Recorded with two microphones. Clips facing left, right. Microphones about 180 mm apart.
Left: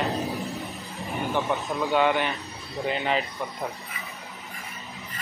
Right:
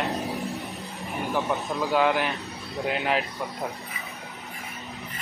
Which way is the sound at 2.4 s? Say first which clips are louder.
Even; centre (ahead or behind).